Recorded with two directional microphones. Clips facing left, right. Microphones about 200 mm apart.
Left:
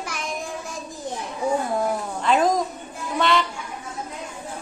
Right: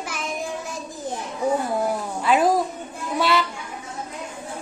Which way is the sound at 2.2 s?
5° right (ahead or behind).